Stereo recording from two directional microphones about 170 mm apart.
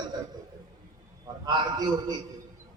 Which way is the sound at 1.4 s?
25° right (ahead or behind).